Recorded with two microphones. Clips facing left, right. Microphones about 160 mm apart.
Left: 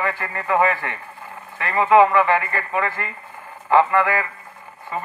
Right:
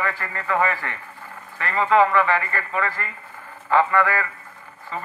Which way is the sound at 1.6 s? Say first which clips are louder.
Left 3 dB; 15° left (ahead or behind).